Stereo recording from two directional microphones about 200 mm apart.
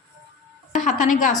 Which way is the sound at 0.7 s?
35° left (ahead or behind).